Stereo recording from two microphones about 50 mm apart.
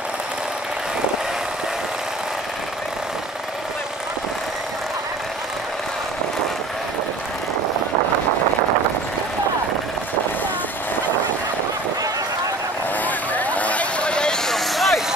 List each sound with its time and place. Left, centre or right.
13.0 s vehicle: left; by 14.4 s centre
14.5 s vehicle: centre